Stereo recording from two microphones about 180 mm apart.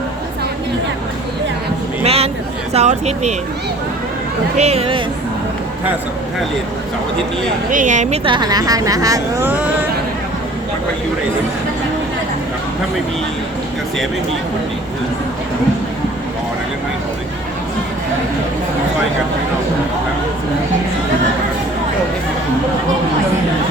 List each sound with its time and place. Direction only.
2.0 s a sound: 35° right (ahead or behind)
2.7 s speech: 40° right (ahead or behind)
4.5 s speech: 35° right (ahead or behind)
7.7 s a woman's voice: 45° right (ahead or behind)
8.2 s speech: 25° right (ahead or behind)